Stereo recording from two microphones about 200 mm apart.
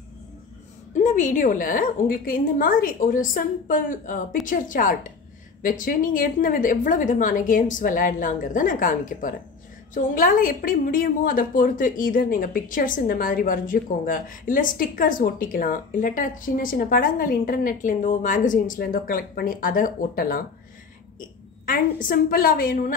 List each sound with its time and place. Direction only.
0.9 s a woman's voice: 40° left (ahead or behind)
21.6 s a woman's voice: 45° left (ahead or behind)